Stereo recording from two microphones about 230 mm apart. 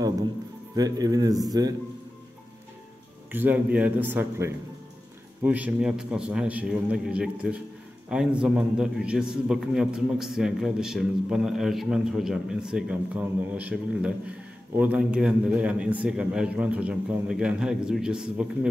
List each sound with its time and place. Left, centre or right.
0.7 s speech: centre
3.3 s a man's voice: centre